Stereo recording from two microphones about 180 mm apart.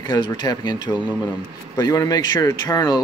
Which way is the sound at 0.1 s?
20° left (ahead or behind).